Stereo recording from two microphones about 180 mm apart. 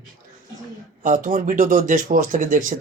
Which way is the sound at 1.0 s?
45° right (ahead or behind).